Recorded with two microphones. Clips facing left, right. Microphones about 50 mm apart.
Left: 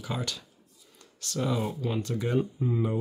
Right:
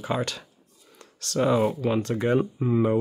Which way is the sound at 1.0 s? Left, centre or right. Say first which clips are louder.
Right 7 dB; right.